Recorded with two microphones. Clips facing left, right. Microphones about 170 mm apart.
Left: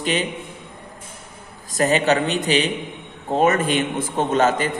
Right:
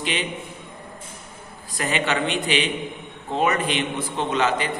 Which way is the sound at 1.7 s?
40° left (ahead or behind).